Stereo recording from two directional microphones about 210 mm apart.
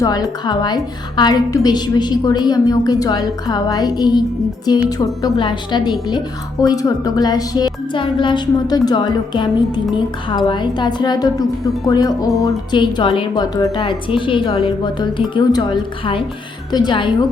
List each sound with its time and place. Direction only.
0.0 s speech: 20° left (ahead or behind)